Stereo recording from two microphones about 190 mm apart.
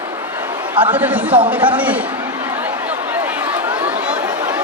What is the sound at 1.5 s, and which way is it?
Speech, 10° right (ahead or behind).